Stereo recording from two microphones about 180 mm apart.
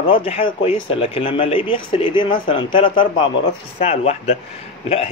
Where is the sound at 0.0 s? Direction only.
30° left (ahead or behind).